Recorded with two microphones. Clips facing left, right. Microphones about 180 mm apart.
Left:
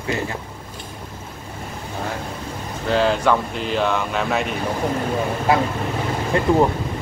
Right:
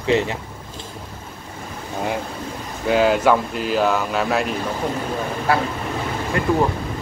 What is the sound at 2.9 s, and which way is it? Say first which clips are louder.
Speech: right 2 dB; 5° right (ahead or behind).